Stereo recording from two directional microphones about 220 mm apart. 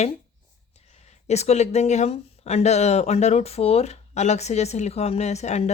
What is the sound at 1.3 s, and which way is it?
Speech, 30° left (ahead or behind).